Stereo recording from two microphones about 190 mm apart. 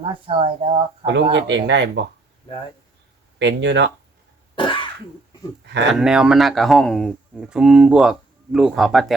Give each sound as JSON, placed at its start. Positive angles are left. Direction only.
{"t": 0.0, "sound": "speech", "side_deg": -25}
{"t": 1.3, "sound": "speech", "side_deg": -70}
{"t": 3.3, "sound": "speech", "side_deg": -70}
{"t": 4.5, "sound": "cough", "side_deg": 25}
{"t": 5.9, "sound": "speech", "side_deg": -5}